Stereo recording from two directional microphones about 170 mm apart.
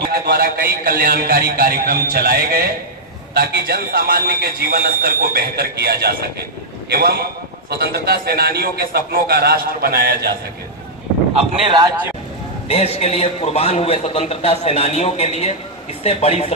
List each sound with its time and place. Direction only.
0.1 s a man's voice: 65° right (ahead or behind)
11.3 s speech: 30° right (ahead or behind)
12.6 s a man's voice: 40° left (ahead or behind)